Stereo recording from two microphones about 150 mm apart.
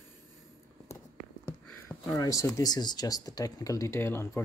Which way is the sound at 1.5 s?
20° left (ahead or behind).